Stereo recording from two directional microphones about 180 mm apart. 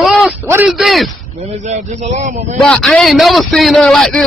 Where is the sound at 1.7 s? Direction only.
40° right (ahead or behind).